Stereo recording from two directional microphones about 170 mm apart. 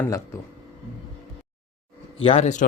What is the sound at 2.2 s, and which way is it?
Speech, 40° left (ahead or behind).